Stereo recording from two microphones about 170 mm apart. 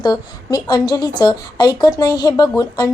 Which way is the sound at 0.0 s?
25° left (ahead or behind).